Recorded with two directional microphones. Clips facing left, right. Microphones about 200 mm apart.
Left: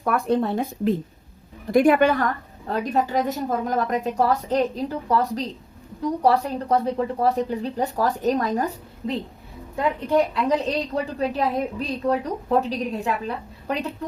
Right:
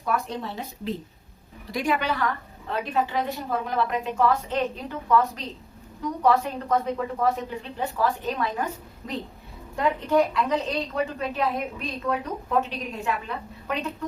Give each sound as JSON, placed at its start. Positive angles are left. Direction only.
{"t": 0.0, "sound": "a woman's voice", "side_deg": 55}
{"t": 10.5, "sound": "a woman's voice", "side_deg": 35}